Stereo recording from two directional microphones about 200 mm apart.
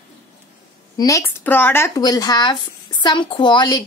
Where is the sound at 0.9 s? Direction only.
15° left (ahead or behind).